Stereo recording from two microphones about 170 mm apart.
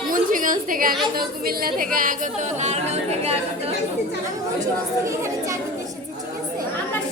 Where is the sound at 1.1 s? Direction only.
60° right (ahead or behind); by 3.3 s 40° right (ahead or behind).